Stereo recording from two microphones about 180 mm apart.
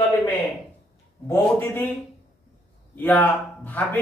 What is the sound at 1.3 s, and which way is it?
Speech, 10° left (ahead or behind).